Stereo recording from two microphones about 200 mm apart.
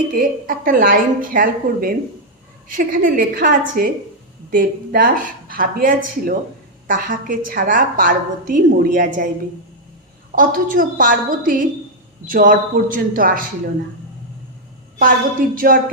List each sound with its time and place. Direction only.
0.1 s a woman's voice: 45° right (ahead or behind)
10.3 s a woman's voice: 45° right (ahead or behind)
14.9 s a woman's voice: 45° right (ahead or behind)